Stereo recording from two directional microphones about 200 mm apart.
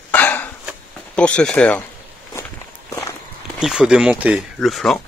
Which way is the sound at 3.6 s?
5° right (ahead or behind).